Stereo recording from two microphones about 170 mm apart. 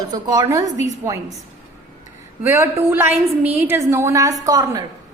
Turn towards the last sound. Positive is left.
turn(degrees=-20)  # may be behind; listen again after turning